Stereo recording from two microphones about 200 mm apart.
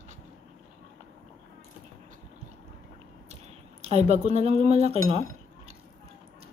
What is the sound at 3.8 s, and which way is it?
Speech, 35° right (ahead or behind).